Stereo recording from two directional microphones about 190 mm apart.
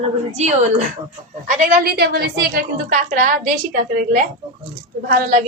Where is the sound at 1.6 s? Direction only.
45° right (ahead or behind).